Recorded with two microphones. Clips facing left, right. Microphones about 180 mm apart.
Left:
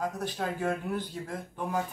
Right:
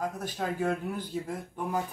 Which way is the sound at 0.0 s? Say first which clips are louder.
Left 1 dB; 10° right (ahead or behind).